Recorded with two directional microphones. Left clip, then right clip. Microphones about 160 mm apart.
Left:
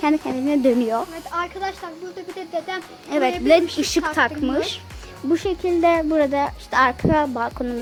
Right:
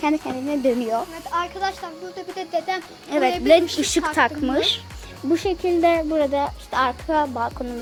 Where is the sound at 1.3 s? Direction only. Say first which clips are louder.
Right 2 dB; 5° right (ahead or behind).